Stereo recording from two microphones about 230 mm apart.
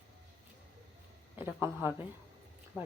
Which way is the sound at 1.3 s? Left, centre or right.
Centre.